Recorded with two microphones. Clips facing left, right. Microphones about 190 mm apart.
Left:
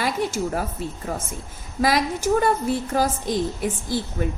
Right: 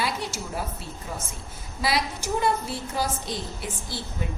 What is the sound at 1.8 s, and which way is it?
A woman's voice, 45° left (ahead or behind).